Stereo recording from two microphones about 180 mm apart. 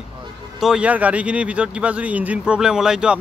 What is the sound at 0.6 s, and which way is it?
Speech, 5° right (ahead or behind).